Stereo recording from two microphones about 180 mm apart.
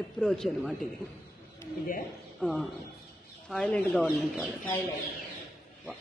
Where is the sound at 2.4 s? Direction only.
5° left (ahead or behind).